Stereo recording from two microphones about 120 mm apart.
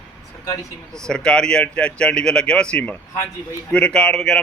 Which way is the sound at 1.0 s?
5° left (ahead or behind).